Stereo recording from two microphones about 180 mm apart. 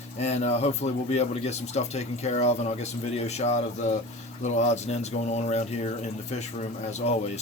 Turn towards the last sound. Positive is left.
turn(degrees=35)  # may be behind; listen again after turning